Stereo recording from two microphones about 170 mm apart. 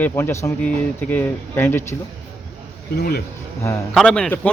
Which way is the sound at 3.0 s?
65° left (ahead or behind).